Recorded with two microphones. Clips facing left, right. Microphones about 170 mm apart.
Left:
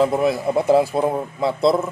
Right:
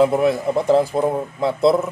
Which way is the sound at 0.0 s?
Centre (ahead or behind).